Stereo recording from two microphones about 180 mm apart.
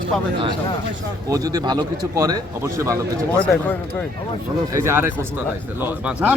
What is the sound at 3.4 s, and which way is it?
Speech, 5° left (ahead or behind).